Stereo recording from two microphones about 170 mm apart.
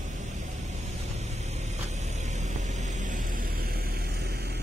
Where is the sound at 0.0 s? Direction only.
45° right (ahead or behind).